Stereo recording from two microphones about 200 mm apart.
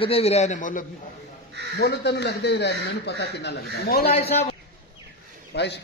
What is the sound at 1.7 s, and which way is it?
Speech, 55° left (ahead or behind).